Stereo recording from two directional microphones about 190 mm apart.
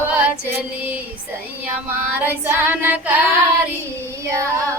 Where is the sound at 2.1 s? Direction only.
10° right (ahead or behind).